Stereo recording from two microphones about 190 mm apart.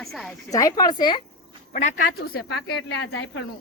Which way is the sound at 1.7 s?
40° left (ahead or behind).